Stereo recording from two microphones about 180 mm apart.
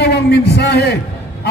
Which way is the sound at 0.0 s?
65° left (ahead or behind).